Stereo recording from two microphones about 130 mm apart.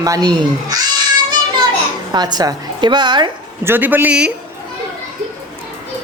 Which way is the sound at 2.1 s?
35° right (ahead or behind).